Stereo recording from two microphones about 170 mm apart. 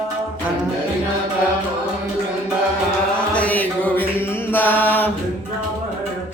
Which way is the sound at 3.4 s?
10° left (ahead or behind).